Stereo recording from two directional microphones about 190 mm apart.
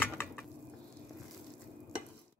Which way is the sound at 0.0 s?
10° left (ahead or behind).